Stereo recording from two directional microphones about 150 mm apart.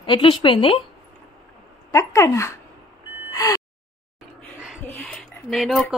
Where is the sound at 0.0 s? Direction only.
35° left (ahead or behind).